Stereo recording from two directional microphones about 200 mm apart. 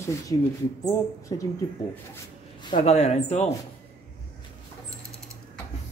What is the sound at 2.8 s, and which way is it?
Speech, 35° left (ahead or behind).